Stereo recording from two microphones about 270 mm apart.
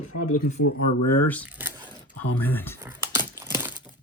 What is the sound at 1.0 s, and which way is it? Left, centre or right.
Speech, left.